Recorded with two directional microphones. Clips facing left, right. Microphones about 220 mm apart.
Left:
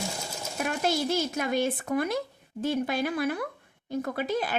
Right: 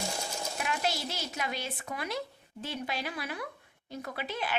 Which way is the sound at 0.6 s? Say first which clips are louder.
Left 7 dB; 45° left (ahead or behind).